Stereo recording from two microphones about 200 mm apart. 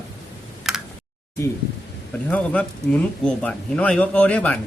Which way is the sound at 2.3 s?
5° left (ahead or behind).